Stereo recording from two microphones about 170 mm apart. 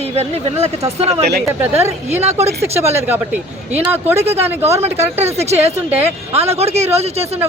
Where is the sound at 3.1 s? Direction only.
10° right (ahead or behind).